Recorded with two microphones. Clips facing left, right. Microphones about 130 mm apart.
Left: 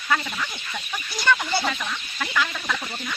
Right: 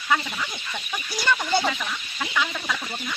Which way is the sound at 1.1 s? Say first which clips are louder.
Even; 15° right (ahead or behind).